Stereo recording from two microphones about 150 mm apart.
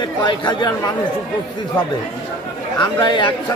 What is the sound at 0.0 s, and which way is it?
Speech, 30° left (ahead or behind).